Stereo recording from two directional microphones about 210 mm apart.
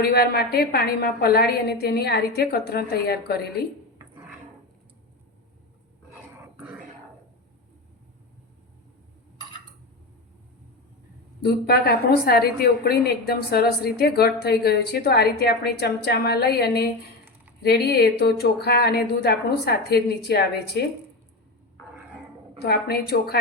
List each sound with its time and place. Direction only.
0.0 s a woman's voice: 50° left (ahead or behind)
11.4 s a woman's voice: 50° left (ahead or behind)
22.5 s a woman's voice: 50° left (ahead or behind)